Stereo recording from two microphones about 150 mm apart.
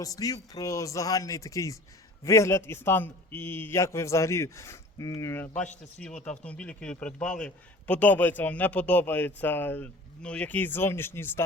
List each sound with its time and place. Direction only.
0.0 s a man's voice: 25° left (ahead or behind)